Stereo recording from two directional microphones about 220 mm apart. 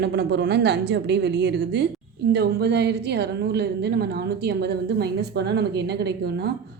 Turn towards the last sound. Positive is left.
turn(degrees=-50)  # may be behind; listen again after turning